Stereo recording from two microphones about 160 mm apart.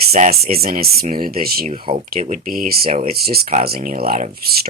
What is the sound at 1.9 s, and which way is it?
Speech, 35° right (ahead or behind).